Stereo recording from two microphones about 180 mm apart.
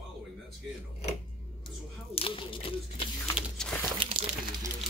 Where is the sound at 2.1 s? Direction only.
30° left (ahead or behind).